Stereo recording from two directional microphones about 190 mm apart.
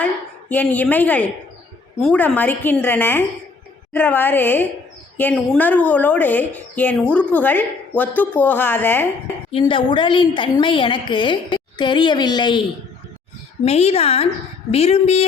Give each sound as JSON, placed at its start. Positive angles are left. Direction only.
{"t": 0.0, "sound": "a woman's voice", "side_deg": 10}
{"t": 9.5, "sound": "a woman's voice", "side_deg": 25}
{"t": 13.7, "sound": "a woman's voice", "side_deg": 35}